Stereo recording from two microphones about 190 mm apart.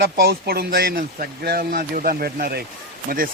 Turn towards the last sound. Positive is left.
turn(degrees=-50)  # may be behind; listen again after turning